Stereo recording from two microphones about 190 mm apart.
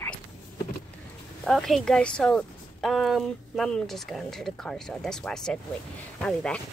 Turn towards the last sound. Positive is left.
turn(degrees=5)  # may be behind; listen again after turning